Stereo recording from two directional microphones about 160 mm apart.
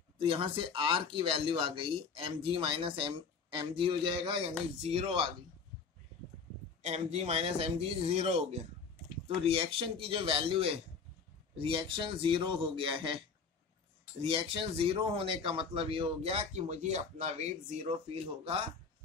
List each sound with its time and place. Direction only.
0.2 s speech: 35° right (ahead or behind)
6.8 s speech: 45° right (ahead or behind)
14.2 s speech: 35° right (ahead or behind)